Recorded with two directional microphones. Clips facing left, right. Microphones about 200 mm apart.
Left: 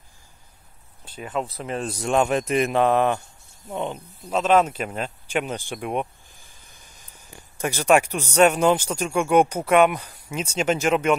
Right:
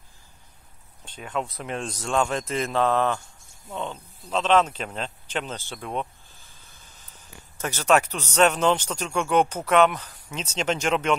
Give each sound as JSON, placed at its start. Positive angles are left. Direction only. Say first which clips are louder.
{"t": 1.0, "sound": "speech", "louder": "left 2 dB", "side_deg": 5}
{"t": 2.0, "sound": "speech", "louder": "left 4 dB", "side_deg": 15}